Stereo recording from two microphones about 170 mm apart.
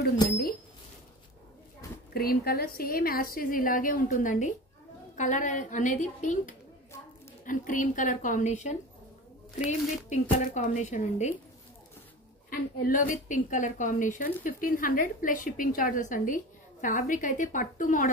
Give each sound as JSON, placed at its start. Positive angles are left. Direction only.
{"t": 2.1, "sound": "a woman's voice", "side_deg": 65}
{"t": 12.4, "sound": "a woman's voice", "side_deg": 55}